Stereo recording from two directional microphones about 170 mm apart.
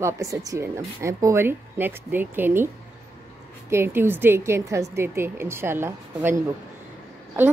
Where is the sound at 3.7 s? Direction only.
15° right (ahead or behind).